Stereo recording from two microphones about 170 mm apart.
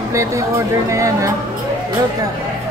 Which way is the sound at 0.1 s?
15° right (ahead or behind).